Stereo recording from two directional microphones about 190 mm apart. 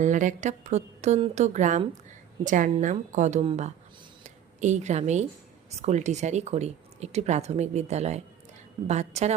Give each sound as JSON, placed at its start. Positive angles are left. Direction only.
{"t": 0.0, "sound": "a woman's voice", "side_deg": -40}
{"t": 4.2, "sound": "a sound", "side_deg": -35}
{"t": 5.8, "sound": "speech", "side_deg": -35}